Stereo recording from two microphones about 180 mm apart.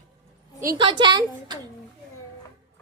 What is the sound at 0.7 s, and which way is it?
Speech, 25° right (ahead or behind).